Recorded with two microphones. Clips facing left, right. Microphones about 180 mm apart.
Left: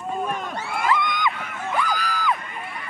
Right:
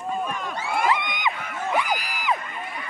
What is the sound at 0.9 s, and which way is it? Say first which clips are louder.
Crowd: left 2 dB; 20° right (ahead or behind).